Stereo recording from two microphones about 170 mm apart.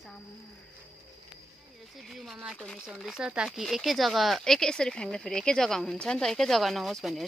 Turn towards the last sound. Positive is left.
turn(degrees=0)  # may be behind; listen again after turning